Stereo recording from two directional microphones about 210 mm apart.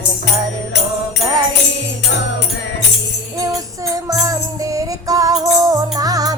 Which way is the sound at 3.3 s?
15° right (ahead or behind).